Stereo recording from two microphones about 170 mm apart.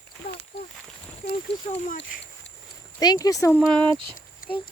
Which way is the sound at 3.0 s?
25° left (ahead or behind).